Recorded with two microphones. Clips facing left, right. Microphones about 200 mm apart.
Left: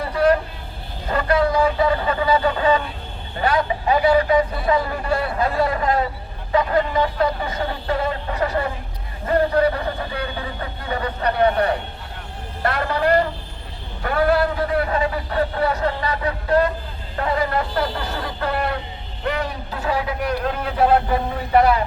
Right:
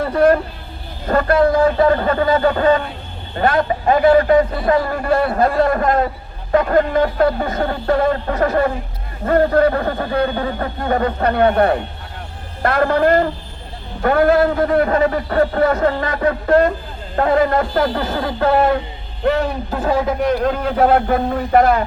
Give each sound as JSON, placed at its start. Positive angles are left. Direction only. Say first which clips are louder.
{"t": 0.0, "sound": "music", "louder": "right 4 dB", "side_deg": -50}
{"t": 1.0, "sound": "a man's voice", "louder": "right 5 dB", "side_deg": -50}